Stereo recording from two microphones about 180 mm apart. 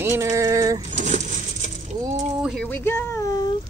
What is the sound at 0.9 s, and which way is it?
Coin, 40° right (ahead or behind).